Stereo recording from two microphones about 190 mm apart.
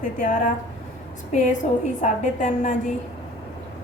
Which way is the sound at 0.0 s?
45° left (ahead or behind).